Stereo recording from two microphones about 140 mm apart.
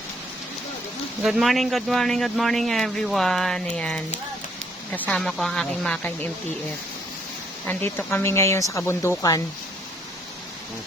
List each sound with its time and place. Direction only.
1.2 s speech: centre (ahead or behind)
7.6 s speech: 15° left (ahead or behind)